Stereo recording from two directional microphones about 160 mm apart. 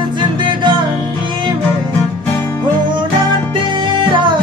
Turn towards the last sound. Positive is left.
turn(degrees=-30)  # may be behind; listen again after turning